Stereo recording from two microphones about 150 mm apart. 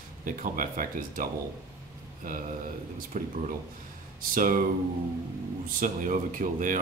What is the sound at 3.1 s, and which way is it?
Speech, 60° right (ahead or behind).